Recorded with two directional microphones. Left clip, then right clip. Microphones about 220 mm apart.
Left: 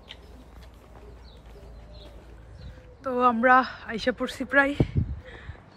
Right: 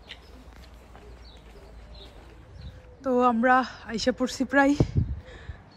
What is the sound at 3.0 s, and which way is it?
Speech, 20° right (ahead or behind).